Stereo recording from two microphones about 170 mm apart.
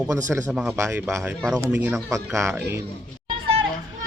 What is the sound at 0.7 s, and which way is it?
Speech, 15° right (ahead or behind).